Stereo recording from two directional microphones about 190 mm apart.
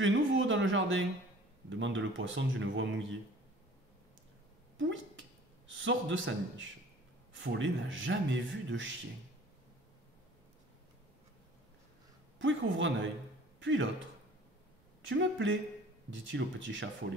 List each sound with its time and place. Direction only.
0.0 s speech: 80° right
4.7 s a man's voice: 80° right
12.4 s a man's voice: 80° right
15.0 s speech: 75° right (ahead or behind)